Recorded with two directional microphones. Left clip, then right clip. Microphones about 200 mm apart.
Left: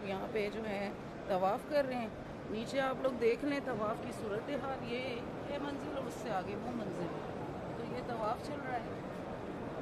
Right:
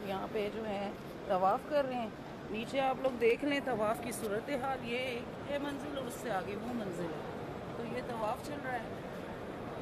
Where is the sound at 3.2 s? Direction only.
15° right (ahead or behind).